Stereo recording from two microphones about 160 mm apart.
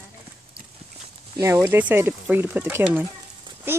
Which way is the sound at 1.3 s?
20° right (ahead or behind).